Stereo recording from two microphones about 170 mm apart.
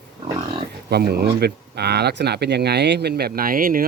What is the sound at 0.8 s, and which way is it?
Speech, 70° right (ahead or behind).